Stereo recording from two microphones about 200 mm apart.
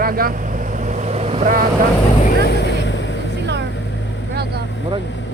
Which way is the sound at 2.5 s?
60° left (ahead or behind).